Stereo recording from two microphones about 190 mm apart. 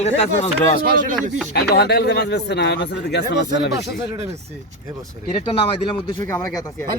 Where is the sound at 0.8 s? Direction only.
50° right (ahead or behind).